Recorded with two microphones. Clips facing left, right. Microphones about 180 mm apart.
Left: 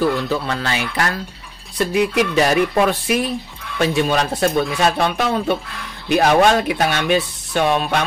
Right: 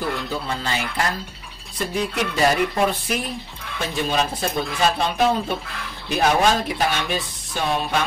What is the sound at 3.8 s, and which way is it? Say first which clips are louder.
Speech: left 6 dB; 70° left (ahead or behind).